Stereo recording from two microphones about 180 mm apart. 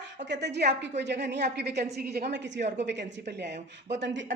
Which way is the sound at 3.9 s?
75° right (ahead or behind).